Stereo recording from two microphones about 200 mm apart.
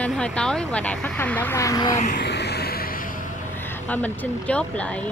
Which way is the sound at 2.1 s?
55° left (ahead or behind).